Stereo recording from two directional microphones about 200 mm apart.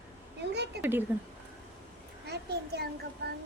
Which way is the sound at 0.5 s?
55° right (ahead or behind).